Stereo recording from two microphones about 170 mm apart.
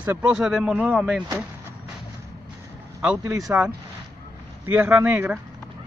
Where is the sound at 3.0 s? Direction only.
15° right (ahead or behind).